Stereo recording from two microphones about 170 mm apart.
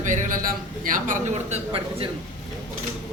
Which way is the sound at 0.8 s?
50° right (ahead or behind).